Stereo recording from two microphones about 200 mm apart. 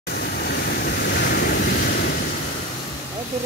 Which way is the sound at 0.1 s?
50° left (ahead or behind).